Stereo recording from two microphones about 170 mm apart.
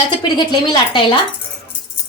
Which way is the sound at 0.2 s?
25° left (ahead or behind).